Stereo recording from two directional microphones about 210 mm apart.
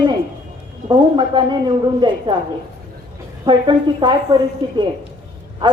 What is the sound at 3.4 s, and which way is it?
A woman's voice, 20° right (ahead or behind).